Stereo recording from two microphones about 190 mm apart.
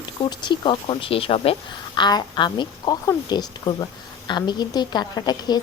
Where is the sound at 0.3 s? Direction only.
25° left (ahead or behind).